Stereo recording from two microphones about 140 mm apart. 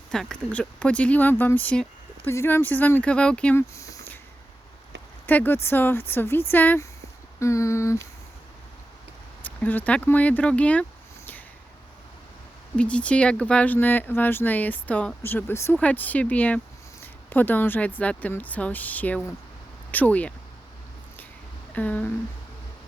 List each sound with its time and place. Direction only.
0.1 s speech: 5° left (ahead or behind)
3.8 s a sound: 25° left (ahead or behind)
5.2 s speech: 15° left (ahead or behind)
7.3 s a sound: 20° left (ahead or behind)
9.4 s speech: 10° left (ahead or behind)
12.7 s speech: 10° left (ahead or behind)
21.7 s speech: 10° left (ahead or behind)